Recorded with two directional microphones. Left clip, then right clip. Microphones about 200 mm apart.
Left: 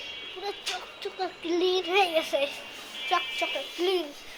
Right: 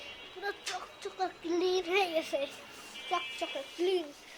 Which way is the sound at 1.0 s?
25° right (ahead or behind).